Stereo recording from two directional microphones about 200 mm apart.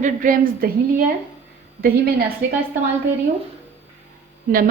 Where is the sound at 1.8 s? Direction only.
50° right (ahead or behind).